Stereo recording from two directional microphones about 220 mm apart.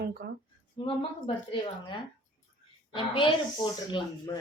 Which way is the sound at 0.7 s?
25° left (ahead or behind).